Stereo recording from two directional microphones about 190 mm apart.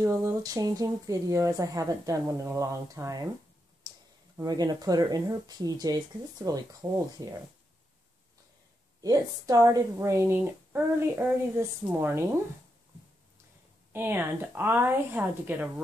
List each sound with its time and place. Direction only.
0.0 s a woman's voice: 15° right (ahead or behind)
4.4 s speech: 20° right (ahead or behind)
9.0 s a woman's voice: 20° right (ahead or behind)
13.9 s a woman's voice: 10° right (ahead or behind)